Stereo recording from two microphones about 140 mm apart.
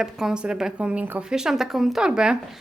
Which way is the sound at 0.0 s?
5° right (ahead or behind).